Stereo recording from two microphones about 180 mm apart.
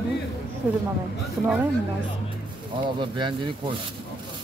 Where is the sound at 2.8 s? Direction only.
25° right (ahead or behind).